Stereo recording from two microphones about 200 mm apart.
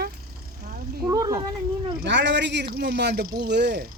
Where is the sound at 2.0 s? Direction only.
60° right (ahead or behind).